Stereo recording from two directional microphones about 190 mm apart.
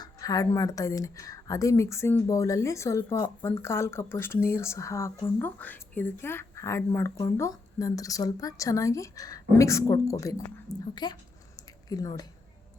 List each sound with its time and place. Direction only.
0.0 s a woman's voice: 20° left (ahead or behind)